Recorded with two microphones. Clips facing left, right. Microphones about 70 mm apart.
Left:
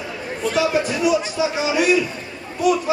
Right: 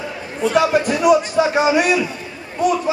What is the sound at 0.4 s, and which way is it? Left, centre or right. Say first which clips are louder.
Speech: right 4 dB; right.